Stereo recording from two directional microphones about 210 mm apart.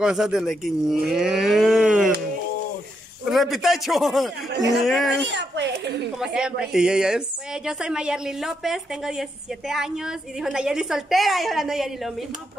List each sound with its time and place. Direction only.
0.0 s a woman's voice: 5° right (ahead or behind)
3.3 s a woman's voice: centre (ahead or behind)
5.3 s a child's voice: 55° right (ahead or behind)
6.1 s a woman's voice: 5° right (ahead or behind)